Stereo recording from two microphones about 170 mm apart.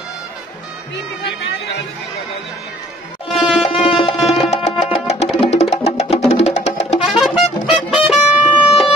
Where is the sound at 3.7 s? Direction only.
35° left (ahead or behind).